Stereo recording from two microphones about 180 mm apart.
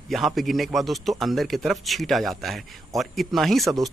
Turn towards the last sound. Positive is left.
turn(degrees=0)  # may be behind; listen again after turning